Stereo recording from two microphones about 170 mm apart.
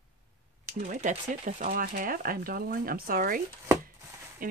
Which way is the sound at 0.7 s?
55° right (ahead or behind).